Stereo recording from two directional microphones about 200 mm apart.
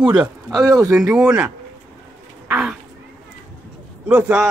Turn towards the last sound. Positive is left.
turn(degrees=-10)  # may be behind; listen again after turning